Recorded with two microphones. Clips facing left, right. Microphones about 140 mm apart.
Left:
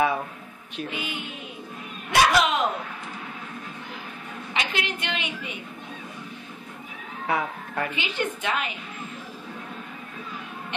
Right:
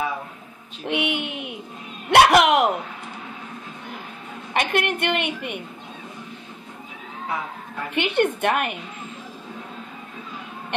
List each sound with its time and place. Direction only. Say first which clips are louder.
0.8 s speech: right 11 dB; 75° right (ahead or behind)
4.6 s a woman's voice: right 7 dB; 55° right (ahead or behind)
7.2 s a sound: left 3 dB; 75° left (ahead or behind)
7.9 s a woman's voice: right 8 dB; 60° right (ahead or behind)